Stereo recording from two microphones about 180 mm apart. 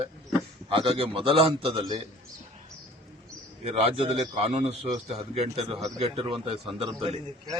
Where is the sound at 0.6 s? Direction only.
30° right (ahead or behind).